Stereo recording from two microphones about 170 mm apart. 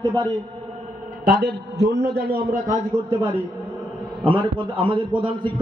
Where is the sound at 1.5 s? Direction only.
75° right (ahead or behind); by 3.1 s 45° right (ahead or behind).